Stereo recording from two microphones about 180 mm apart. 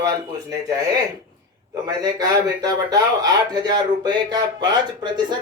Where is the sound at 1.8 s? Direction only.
20° right (ahead or behind).